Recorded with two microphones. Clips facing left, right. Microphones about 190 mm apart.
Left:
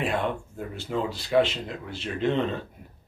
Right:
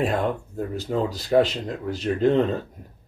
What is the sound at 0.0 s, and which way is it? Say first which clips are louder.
Speech: right 4 dB; 40° right (ahead or behind).